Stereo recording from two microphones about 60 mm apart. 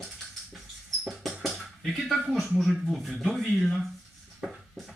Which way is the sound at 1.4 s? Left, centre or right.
Centre.